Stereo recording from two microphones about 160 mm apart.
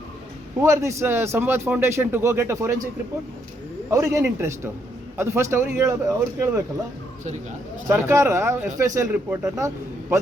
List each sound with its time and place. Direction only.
0.6 s a man's voice: 20° right (ahead or behind)
3.8 s a man's voice: 20° right (ahead or behind)
7.9 s a man's voice: 15° right (ahead or behind)